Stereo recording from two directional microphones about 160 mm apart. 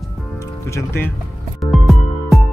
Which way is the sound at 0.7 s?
15° left (ahead or behind).